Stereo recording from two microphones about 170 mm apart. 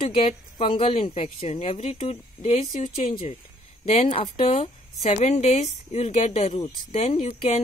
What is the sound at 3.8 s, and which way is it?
Speech, 35° left (ahead or behind).